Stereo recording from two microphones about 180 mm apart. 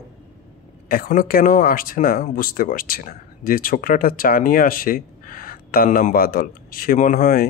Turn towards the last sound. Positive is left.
turn(degrees=50)  # may be behind; listen again after turning